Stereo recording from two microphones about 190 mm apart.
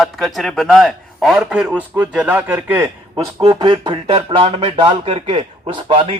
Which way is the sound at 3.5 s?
25° right (ahead or behind).